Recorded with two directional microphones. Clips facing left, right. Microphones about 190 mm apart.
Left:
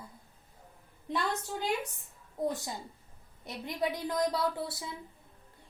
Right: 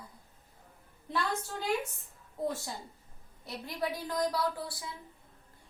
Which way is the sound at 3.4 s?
20° left (ahead or behind).